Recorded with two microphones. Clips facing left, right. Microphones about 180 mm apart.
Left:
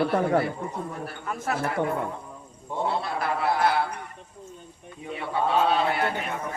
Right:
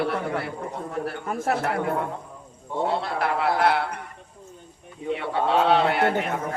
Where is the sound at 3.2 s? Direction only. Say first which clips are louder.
Right 2 dB; 75° right (ahead or behind).